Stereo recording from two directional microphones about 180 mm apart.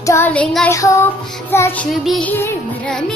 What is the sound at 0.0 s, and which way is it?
Child singing, 15° left (ahead or behind).